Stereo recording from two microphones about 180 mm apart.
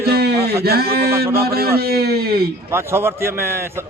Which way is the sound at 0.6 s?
60° right (ahead or behind).